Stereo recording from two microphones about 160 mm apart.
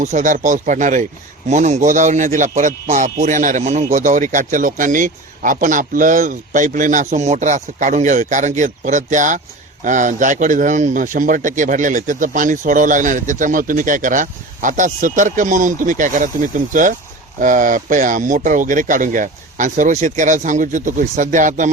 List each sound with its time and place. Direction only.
0.0 s a man's voice: 50° right (ahead or behind)
17.4 s a man's voice: 55° right (ahead or behind)